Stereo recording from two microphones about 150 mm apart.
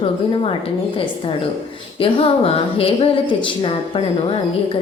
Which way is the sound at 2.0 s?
40° left (ahead or behind).